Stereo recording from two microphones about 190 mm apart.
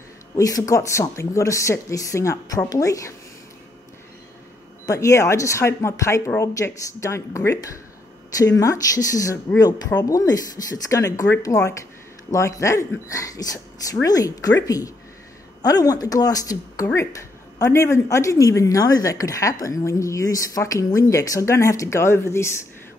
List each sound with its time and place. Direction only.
0.4 s speech: 15° left (ahead or behind)
4.8 s speech: 15° left (ahead or behind)